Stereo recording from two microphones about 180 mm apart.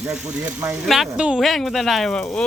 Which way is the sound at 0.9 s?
5° right (ahead or behind).